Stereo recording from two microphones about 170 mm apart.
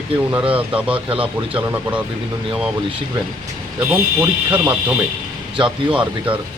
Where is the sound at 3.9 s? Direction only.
10° right (ahead or behind).